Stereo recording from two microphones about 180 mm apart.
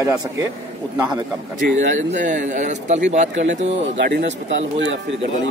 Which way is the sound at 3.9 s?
85° right.